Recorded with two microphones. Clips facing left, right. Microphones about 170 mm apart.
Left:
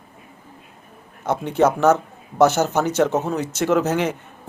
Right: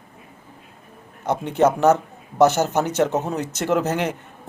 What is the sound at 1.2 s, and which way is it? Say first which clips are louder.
A man's voice: even; 15° right (ahead or behind).